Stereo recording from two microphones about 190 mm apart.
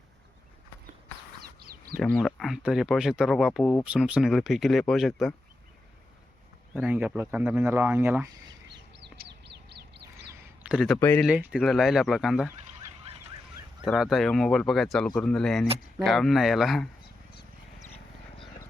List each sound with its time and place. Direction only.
1.4 s a sound: 50° right (ahead or behind)
2.0 s speech: 5° left (ahead or behind)
6.8 s speech: 10° right (ahead or behind)
9.1 s bird: 60° right (ahead or behind)
10.6 s speech: 5° right (ahead or behind)
11.0 s speech: 10° left (ahead or behind)
11.3 s speech: 5° right (ahead or behind)
13.8 s speech: centre (ahead or behind)